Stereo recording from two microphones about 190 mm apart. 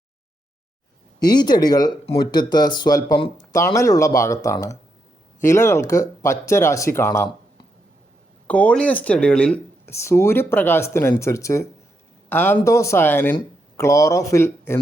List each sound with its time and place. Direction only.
1.2 s speech: 20° left (ahead or behind)
8.4 s speech: 5° left (ahead or behind)